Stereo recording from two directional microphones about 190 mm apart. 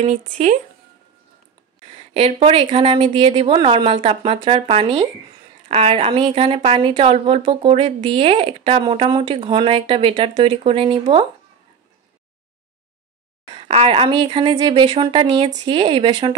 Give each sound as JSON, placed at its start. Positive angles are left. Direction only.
{"t": 0.0, "sound": "speech", "side_deg": -35}
{"t": 2.1, "sound": "a woman's voice", "side_deg": -30}
{"t": 13.6, "sound": "a woman's voice", "side_deg": -30}